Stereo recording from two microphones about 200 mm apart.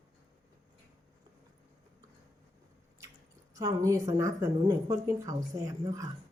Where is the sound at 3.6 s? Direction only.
15° right (ahead or behind).